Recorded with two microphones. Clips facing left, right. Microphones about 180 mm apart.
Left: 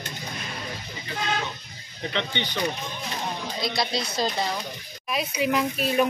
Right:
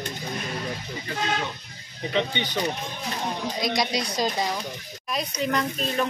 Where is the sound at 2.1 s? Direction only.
10° right (ahead or behind).